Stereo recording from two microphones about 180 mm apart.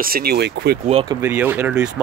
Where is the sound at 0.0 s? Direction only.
60° right (ahead or behind).